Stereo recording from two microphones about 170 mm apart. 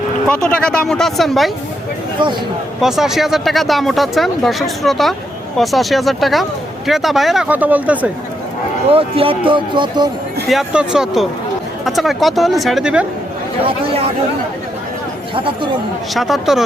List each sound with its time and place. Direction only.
0.3 s speech: 5° left (ahead or behind)
2.8 s speech: centre (ahead or behind)
8.9 s speech: 35° right (ahead or behind)
10.5 s speech: 5° right (ahead or behind)
16.1 s speech: centre (ahead or behind)